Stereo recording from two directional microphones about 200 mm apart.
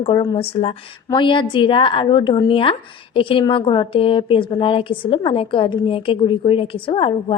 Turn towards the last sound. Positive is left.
turn(degrees=25)  # may be behind; listen again after turning